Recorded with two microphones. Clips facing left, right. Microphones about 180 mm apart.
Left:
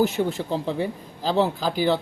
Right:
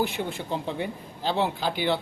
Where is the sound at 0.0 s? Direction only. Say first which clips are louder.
Left 6 dB; 40° left (ahead or behind).